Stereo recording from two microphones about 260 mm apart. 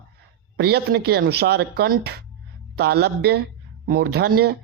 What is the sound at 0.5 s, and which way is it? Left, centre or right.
Speech, right.